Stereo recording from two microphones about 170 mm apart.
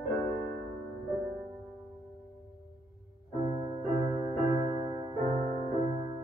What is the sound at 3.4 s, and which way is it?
Music, 30° right (ahead or behind).